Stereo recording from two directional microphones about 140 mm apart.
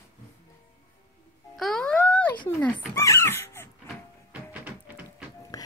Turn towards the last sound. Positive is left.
turn(degrees=25)  # may be behind; listen again after turning